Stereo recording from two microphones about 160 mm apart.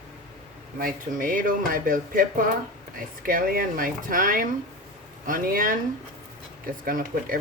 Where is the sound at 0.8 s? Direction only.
60° right (ahead or behind).